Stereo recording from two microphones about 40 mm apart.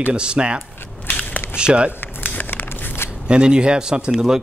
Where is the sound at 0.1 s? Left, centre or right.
Right.